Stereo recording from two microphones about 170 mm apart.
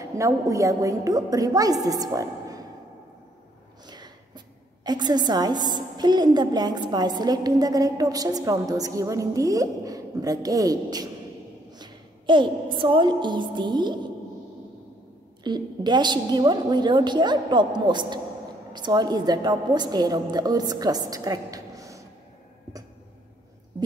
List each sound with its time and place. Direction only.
0.0 s a woman's voice: 20° right (ahead or behind)
3.8 s a sound: 25° right (ahead or behind)
4.8 s a woman's voice: 25° right (ahead or behind)
15.4 s a woman's voice: 25° right (ahead or behind)